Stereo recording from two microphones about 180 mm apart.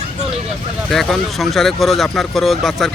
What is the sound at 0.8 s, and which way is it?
Speech, centre (ahead or behind).